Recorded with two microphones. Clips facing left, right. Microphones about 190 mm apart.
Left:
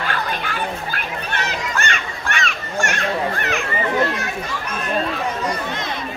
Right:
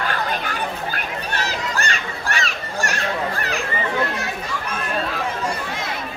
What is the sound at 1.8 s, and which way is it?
Children playing, 35° right (ahead or behind).